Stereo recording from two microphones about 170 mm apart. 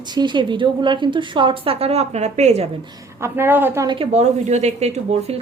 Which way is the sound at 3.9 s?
35° right (ahead or behind).